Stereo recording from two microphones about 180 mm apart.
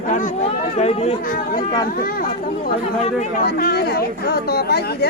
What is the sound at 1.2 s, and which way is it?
Speech, 50° left (ahead or behind).